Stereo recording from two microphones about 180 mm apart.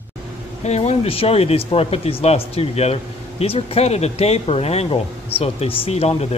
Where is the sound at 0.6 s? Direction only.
35° left (ahead or behind).